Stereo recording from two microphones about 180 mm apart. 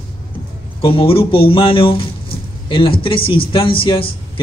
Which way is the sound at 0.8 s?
30° left (ahead or behind).